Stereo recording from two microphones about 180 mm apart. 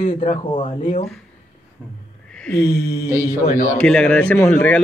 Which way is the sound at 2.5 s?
65° left (ahead or behind).